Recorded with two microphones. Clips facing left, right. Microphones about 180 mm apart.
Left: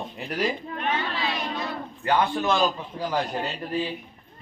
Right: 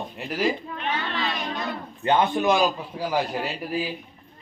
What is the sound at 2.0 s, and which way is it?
A man's voice, 20° right (ahead or behind).